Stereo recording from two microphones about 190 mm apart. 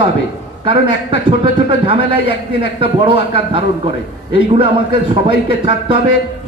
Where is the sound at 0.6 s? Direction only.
25° right (ahead or behind).